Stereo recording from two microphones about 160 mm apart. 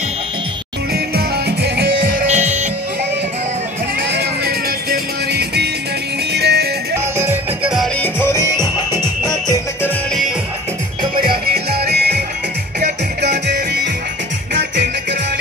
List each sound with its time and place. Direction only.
0.9 s music: 85° right
2.0 s music: 45° right (ahead or behind)
4.1 s music: 85° right
7.2 s music: 15° right (ahead or behind)
8.0 s music: 15° left (ahead or behind)
11.2 s music: 75° right (ahead or behind); by 12.2 s 90° right